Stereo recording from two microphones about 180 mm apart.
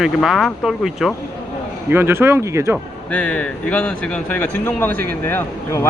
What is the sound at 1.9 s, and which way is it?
Speech, 10° right (ahead or behind).